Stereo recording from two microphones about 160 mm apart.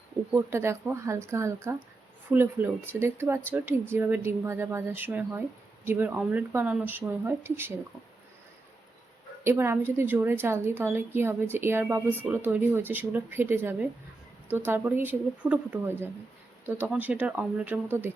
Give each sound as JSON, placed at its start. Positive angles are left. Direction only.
{"t": 0.3, "sound": "speech", "side_deg": -15}
{"t": 9.4, "sound": "speech", "side_deg": -15}